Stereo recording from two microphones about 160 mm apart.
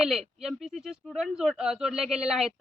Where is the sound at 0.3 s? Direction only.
5° right (ahead or behind).